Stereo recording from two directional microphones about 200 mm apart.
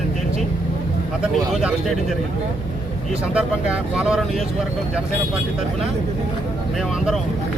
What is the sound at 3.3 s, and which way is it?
Speech, 5° right (ahead or behind).